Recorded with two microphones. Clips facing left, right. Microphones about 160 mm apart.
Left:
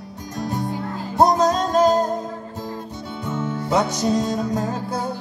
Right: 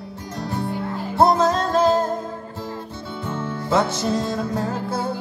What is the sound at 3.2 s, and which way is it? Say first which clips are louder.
Music: left 1 dB; 15° left (ahead or behind).